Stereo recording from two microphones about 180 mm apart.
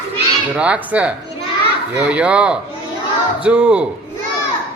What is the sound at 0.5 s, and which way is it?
A man's voice, 5° right (ahead or behind).